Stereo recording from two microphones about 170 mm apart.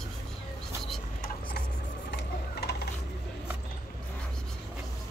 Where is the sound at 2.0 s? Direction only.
70° left (ahead or behind).